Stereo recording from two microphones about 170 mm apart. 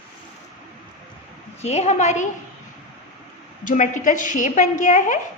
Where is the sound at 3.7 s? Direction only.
50° left (ahead or behind).